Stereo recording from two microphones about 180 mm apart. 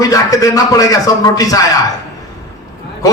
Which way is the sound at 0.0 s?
20° left (ahead or behind).